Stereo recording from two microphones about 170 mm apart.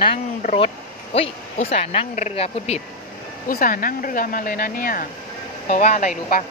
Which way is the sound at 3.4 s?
55° left (ahead or behind).